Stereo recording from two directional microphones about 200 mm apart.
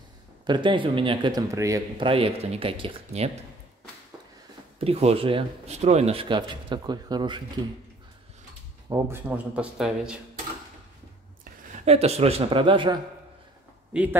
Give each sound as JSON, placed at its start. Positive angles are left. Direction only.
{"t": 0.5, "sound": "speech", "side_deg": -25}
{"t": 2.0, "sound": "speech", "side_deg": -30}
{"t": 4.7, "sound": "speech", "side_deg": -30}
{"t": 8.8, "sound": "speech", "side_deg": -15}
{"t": 11.8, "sound": "speech", "side_deg": -30}
{"t": 13.9, "sound": "a man's voice", "side_deg": -5}